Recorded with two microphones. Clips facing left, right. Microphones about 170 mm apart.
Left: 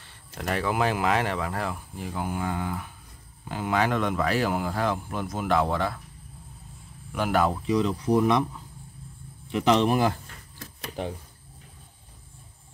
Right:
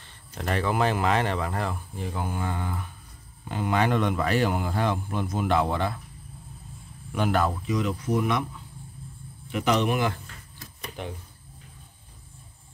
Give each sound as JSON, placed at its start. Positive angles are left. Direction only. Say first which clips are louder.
{"t": 0.0, "sound": "speech", "louder": "even", "side_deg": 5}
{"t": 7.2, "sound": "speech", "louder": "left 1 dB", "side_deg": 10}
{"t": 7.6, "sound": "speech", "louder": "left 3 dB", "side_deg": 30}
{"t": 9.5, "sound": "speech", "louder": "left 3 dB", "side_deg": 25}